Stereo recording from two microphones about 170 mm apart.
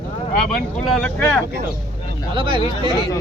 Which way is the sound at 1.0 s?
5° left (ahead or behind).